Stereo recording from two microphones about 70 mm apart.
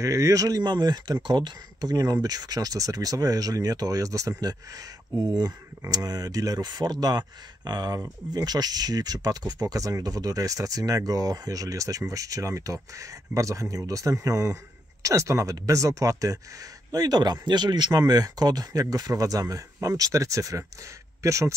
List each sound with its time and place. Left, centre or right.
0.0 s speech: right
2.2 s speech: right
16.9 s speech: right